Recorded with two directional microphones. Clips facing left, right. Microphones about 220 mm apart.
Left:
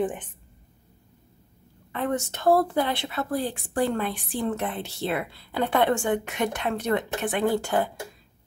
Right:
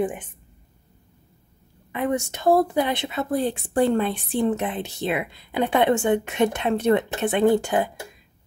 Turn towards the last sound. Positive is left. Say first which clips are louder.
# right 5 dB
turn(degrees=-15)  # may be behind; listen again after turning